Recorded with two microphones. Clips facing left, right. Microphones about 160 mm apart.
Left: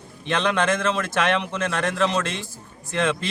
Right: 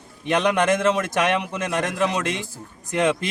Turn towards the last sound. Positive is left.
turn(degrees=-15)  # may be behind; listen again after turning